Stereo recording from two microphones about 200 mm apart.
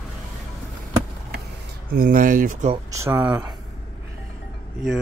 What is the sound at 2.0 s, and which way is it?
Speech, 45° right (ahead or behind).